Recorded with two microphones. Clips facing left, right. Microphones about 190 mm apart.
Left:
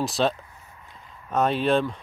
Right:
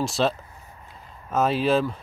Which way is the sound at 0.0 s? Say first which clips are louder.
Even; centre (ahead or behind).